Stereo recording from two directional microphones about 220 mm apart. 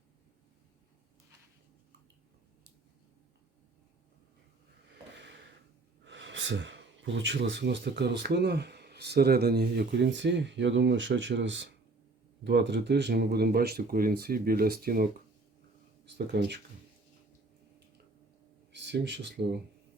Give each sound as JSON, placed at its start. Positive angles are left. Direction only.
{"t": 6.1, "sound": "speech", "side_deg": -55}
{"t": 16.1, "sound": "speech", "side_deg": -50}
{"t": 18.7, "sound": "a sound", "side_deg": -55}